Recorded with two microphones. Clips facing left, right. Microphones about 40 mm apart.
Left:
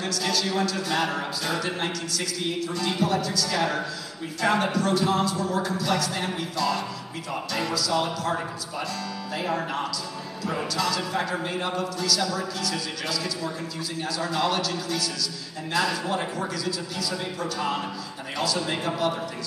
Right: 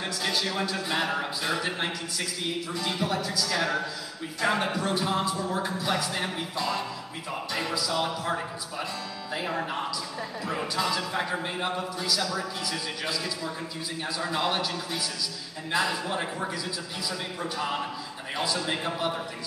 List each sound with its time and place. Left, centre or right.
0.0 s a man's voice: right
3.4 s a man's voice: centre
4.7 s a man's voice: right
9.5 s a man's voice: centre
11.4 s speech: centre
17.4 s a man's voice: centre